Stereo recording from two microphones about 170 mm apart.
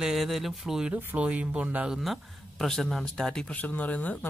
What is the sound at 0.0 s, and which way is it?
Speech, centre (ahead or behind).